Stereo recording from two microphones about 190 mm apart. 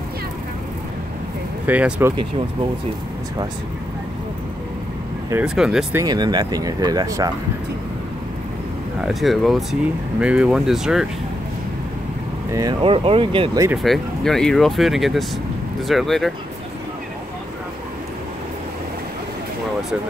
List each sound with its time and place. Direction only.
1.7 s speech: 5° right (ahead or behind)
5.3 s speech: 5° right (ahead or behind)
5.9 s speech: 20° right (ahead or behind)
9.0 s speech: centre (ahead or behind)
12.5 s speech: 25° right (ahead or behind)
13.8 s speech: centre (ahead or behind)